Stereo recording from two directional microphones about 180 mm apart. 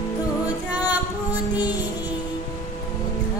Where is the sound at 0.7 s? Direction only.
10° right (ahead or behind).